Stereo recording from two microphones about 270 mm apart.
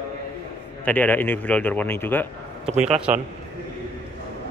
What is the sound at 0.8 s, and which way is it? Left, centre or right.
A man's voice, centre.